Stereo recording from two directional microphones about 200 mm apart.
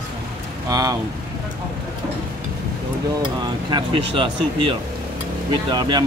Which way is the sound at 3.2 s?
20° right (ahead or behind).